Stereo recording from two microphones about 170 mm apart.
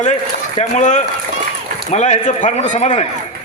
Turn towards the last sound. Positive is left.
turn(degrees=45)  # may be behind; listen again after turning